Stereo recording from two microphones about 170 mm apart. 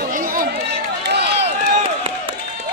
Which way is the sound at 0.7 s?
80° right.